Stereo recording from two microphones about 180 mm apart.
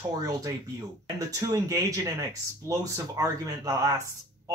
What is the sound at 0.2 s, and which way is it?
Speech, 20° right (ahead or behind).